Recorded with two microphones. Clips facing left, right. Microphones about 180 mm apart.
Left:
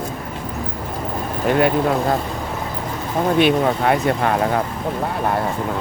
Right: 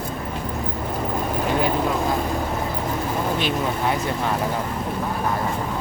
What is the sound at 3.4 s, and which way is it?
Speech, 65° left (ahead or behind).